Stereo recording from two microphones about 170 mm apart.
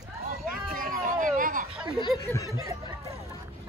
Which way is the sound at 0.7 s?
55° right (ahead or behind).